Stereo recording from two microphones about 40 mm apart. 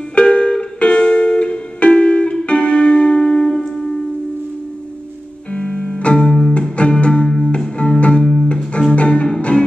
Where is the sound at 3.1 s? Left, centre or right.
Centre.